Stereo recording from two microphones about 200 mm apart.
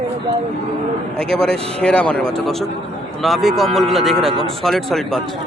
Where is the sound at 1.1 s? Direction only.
5° left (ahead or behind).